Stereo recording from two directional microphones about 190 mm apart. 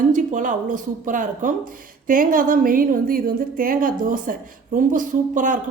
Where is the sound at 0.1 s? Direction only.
40° right (ahead or behind).